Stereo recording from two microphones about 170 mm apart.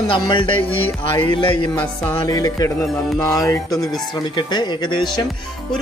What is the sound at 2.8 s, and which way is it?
Music, centre (ahead or behind).